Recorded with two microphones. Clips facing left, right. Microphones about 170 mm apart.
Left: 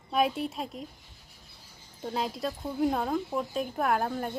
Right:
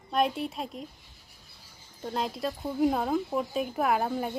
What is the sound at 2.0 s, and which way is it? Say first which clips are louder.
Speech: even; centre (ahead or behind).